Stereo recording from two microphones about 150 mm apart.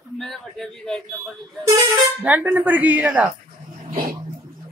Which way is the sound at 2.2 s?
10° right (ahead or behind).